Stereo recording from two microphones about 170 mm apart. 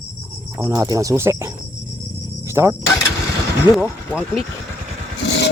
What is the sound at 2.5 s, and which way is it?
Speech, 15° right (ahead or behind).